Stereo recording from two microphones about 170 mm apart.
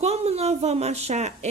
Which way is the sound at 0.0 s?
40° right (ahead or behind).